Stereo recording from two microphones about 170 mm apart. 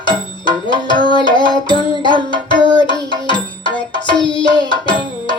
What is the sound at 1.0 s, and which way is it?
Music, 25° left (ahead or behind).